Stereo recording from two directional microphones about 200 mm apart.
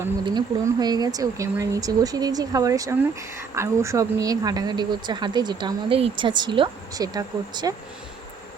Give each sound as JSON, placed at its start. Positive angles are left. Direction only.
{"t": 0.3, "sound": "speech", "side_deg": -20}